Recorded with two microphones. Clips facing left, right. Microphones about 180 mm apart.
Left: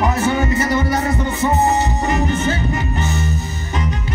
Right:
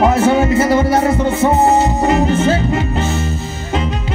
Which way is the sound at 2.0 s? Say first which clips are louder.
Right 6 dB; 90° right.